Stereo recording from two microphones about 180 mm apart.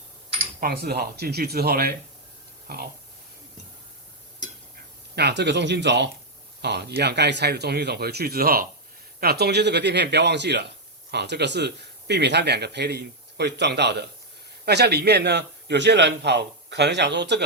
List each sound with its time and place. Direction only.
0.6 s speech: 55° right (ahead or behind)
5.1 s speech: 70° right (ahead or behind)